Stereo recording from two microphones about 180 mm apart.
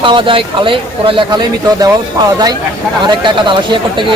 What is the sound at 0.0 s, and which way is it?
Speech, 25° right (ahead or behind).